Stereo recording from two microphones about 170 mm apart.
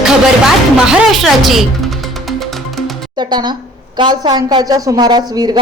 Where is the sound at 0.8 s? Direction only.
Centre (ahead or behind).